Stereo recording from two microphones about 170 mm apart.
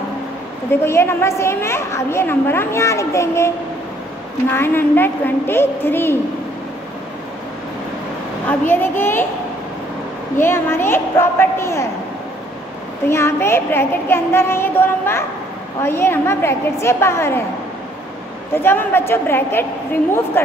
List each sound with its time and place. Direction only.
0.7 s a woman's voice: 15° left (ahead or behind)
8.5 s a woman's voice: 10° left (ahead or behind)
10.3 s a woman's voice: 15° left (ahead or behind)
13.1 s a woman's voice: 15° left (ahead or behind)
18.5 s a woman's voice: 15° left (ahead or behind)